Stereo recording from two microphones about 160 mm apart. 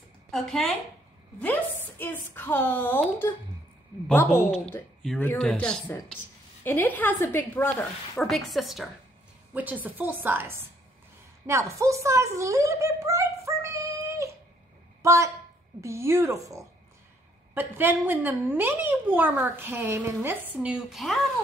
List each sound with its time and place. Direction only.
0.3 s a woman's voice: centre (ahead or behind)
5.0 s a woman's voice: 5° left (ahead or behind)
8.2 s a child's voice: centre (ahead or behind)